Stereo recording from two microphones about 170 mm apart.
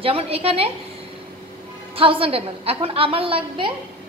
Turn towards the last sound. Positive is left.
turn(degrees=-30)  # may be behind; listen again after turning